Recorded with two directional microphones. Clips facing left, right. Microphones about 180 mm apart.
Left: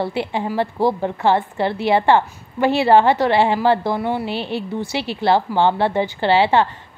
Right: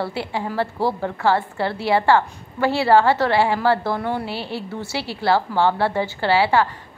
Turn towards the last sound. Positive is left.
turn(degrees=25)  # may be behind; listen again after turning